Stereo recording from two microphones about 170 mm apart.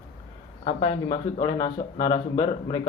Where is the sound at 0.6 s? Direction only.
25° left (ahead or behind).